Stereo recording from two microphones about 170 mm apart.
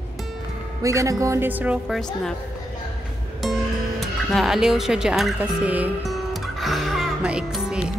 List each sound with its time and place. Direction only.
0.8 s speech: 20° right (ahead or behind)
4.0 s speech: centre (ahead or behind)
6.1 s music: centre (ahead or behind)